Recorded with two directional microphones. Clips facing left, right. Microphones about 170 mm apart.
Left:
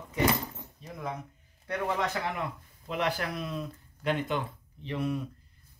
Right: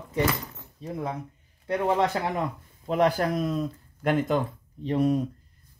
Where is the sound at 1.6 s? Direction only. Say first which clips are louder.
Right 7 dB; 30° right (ahead or behind).